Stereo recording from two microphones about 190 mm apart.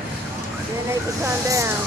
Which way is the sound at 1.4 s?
15° right (ahead or behind).